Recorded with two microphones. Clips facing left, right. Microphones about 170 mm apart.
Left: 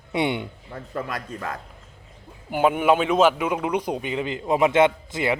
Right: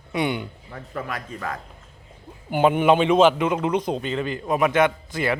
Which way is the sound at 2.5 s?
5° left (ahead or behind).